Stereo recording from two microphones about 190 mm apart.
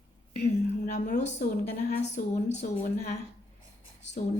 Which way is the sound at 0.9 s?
40° left (ahead or behind).